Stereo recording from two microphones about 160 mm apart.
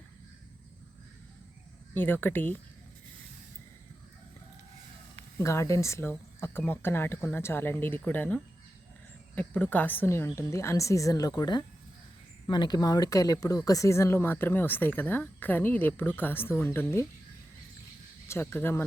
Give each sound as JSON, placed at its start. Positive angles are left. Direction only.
{"t": 1.9, "sound": "speech", "side_deg": 10}
{"t": 5.4, "sound": "speech", "side_deg": 20}
{"t": 18.3, "sound": "speech", "side_deg": 15}